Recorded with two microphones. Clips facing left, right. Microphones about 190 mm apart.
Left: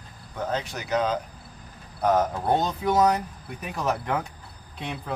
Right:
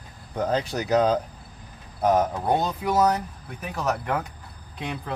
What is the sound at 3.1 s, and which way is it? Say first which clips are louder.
Speech: even; 10° left (ahead or behind).